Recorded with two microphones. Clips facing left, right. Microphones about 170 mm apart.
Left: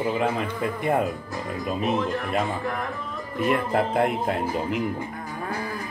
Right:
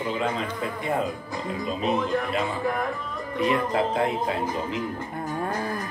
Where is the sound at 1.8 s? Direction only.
Centre (ahead or behind).